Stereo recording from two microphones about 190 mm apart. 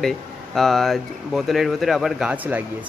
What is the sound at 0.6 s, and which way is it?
Speech, centre (ahead or behind).